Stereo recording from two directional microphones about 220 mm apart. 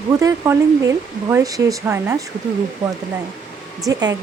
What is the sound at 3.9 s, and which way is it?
Speech, 15° right (ahead or behind).